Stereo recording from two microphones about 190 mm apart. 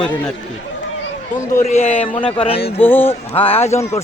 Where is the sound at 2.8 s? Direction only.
10° left (ahead or behind).